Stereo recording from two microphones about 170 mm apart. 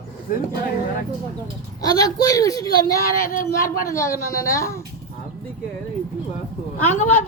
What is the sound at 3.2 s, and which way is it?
Speech, 55° left (ahead or behind).